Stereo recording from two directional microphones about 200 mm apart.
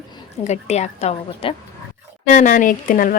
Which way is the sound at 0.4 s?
35° left (ahead or behind).